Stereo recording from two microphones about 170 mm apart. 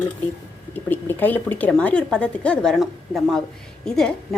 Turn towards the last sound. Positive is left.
turn(degrees=5)  # may be behind; listen again after turning